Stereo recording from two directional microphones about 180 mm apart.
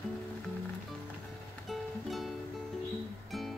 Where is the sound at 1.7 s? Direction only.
Centre (ahead or behind).